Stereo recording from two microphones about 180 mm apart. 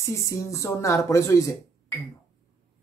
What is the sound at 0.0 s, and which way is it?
Speech, 15° left (ahead or behind).